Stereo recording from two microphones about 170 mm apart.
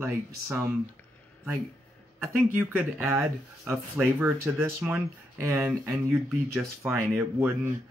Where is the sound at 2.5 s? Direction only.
10° right (ahead or behind).